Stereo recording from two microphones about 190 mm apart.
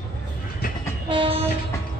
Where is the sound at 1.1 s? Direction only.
30° right (ahead or behind).